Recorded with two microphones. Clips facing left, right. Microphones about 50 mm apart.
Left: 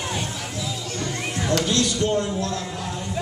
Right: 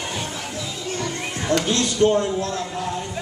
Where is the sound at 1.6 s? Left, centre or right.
Right.